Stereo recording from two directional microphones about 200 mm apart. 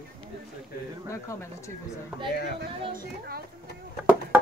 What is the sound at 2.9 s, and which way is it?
Speech, 50° right (ahead or behind).